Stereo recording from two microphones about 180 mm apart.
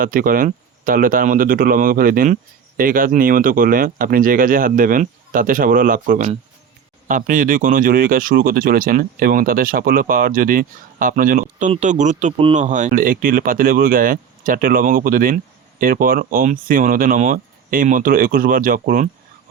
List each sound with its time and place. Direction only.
0.0 s speech: 50° right (ahead or behind)